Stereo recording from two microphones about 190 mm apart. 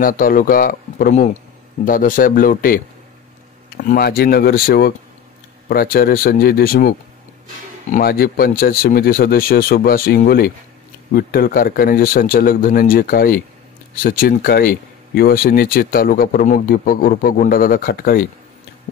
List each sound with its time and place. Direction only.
0.0 s speech: 45° left (ahead or behind)